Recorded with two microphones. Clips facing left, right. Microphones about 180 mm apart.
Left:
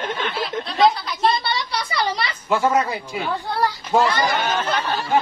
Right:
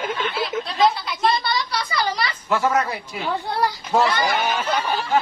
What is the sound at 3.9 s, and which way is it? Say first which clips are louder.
Speech: left 1 dB; 5° right (ahead or behind).